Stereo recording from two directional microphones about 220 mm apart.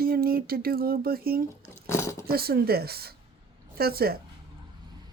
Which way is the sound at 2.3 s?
45° right (ahead or behind).